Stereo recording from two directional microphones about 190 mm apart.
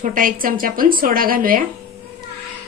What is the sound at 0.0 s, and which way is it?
Speech, 45° right (ahead or behind).